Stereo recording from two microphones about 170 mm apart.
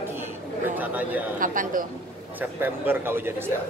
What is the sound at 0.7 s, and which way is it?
Speech, 10° right (ahead or behind).